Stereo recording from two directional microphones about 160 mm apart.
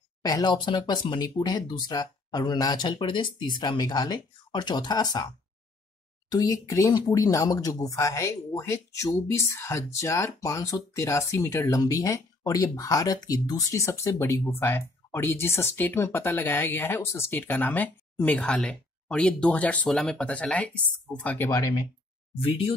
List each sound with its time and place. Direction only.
0.2 s speech: 25° left (ahead or behind); by 21.5 s 10° left (ahead or behind)
21.5 s speech: 20° left (ahead or behind)